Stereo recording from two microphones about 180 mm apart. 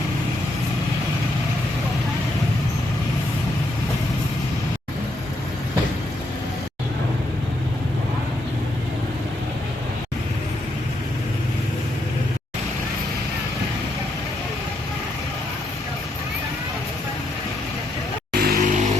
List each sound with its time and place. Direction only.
18.3 s vehicle: 50° right (ahead or behind)